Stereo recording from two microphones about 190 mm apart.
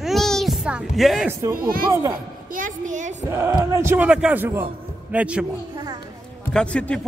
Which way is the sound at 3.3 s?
15° right (ahead or behind).